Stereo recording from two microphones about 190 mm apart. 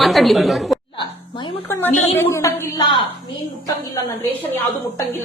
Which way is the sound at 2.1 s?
15° left (ahead or behind).